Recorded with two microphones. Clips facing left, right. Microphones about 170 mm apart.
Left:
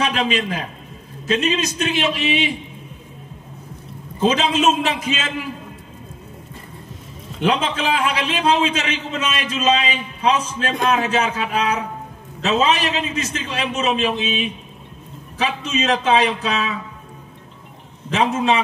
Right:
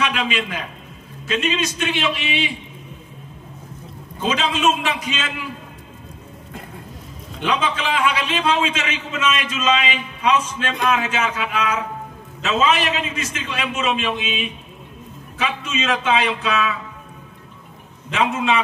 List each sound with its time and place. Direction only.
0.0 s a man's voice: 40° left (ahead or behind)
4.2 s a man's voice: 40° left (ahead or behind)
7.4 s a man's voice: 45° left (ahead or behind)
18.1 s a man's voice: 40° left (ahead or behind)